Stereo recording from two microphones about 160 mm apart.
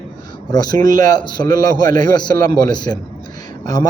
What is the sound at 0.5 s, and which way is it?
A man's voice, 25° left (ahead or behind).